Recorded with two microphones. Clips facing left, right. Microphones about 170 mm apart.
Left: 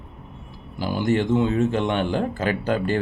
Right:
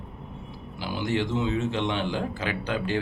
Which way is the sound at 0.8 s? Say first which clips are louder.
Left 6 dB; 45° left (ahead or behind).